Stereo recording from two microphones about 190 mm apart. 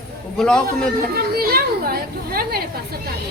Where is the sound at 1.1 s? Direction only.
55° right (ahead or behind).